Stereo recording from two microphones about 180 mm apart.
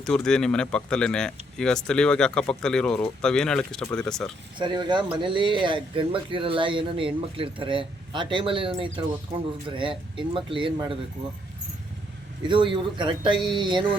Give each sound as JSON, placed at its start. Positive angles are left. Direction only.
{"t": 0.0, "sound": "speech", "side_deg": 5}
{"t": 4.5, "sound": "speech", "side_deg": -25}
{"t": 12.5, "sound": "speech", "side_deg": -30}